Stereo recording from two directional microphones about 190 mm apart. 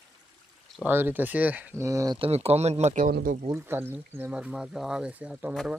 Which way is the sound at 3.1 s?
55° right (ahead or behind).